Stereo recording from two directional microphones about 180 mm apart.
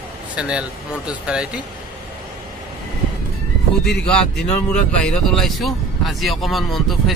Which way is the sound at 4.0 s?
5° left (ahead or behind).